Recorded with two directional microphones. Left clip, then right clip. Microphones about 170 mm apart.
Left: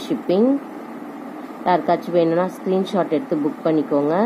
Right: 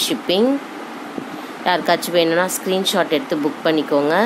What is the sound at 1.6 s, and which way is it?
A woman's voice, 10° right (ahead or behind).